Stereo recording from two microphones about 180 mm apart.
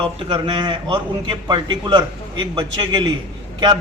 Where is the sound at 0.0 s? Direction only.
30° right (ahead or behind).